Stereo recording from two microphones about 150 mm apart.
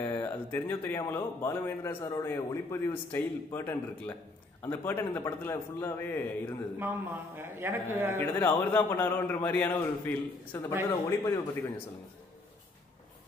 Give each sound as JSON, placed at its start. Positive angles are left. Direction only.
{"t": 0.0, "sound": "a man's voice", "side_deg": 15}
{"t": 6.8, "sound": "speech", "side_deg": -15}
{"t": 8.2, "sound": "a man's voice", "side_deg": 15}